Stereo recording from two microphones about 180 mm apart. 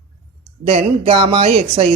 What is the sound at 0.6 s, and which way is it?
A woman's voice, 35° right (ahead or behind).